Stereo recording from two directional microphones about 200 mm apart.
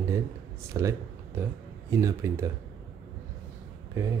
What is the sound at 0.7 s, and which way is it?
Speech, 15° right (ahead or behind).